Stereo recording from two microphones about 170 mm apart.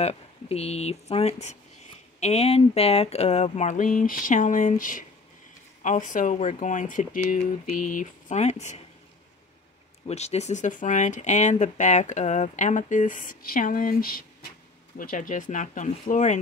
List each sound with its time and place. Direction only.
0.0 s speech: 35° left (ahead or behind)
10.0 s speech: 40° left (ahead or behind)